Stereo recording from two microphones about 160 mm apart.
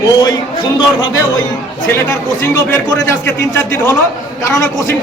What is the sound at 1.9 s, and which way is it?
A man's voice, 15° left (ahead or behind).